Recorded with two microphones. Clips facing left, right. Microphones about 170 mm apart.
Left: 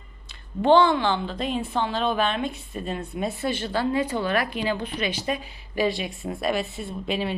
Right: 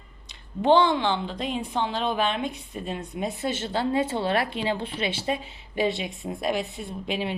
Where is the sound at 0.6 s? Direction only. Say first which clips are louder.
Left 2 dB; 15° right (ahead or behind).